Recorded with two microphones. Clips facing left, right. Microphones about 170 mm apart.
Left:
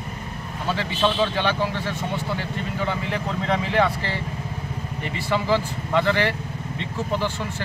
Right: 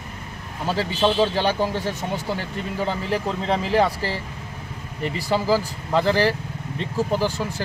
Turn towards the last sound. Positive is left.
turn(degrees=-40)  # may be behind; listen again after turning